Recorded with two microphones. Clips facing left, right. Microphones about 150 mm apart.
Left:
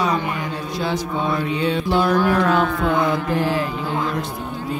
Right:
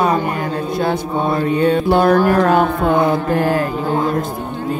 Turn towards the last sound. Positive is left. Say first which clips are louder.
# right 4 dB
turn(degrees=-50)  # may be behind; listen again after turning